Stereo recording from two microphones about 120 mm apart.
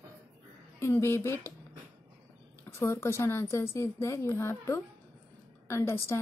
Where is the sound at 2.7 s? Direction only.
20° left (ahead or behind).